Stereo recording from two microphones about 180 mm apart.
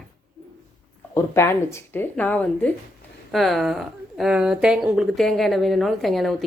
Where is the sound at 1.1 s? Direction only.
15° left (ahead or behind).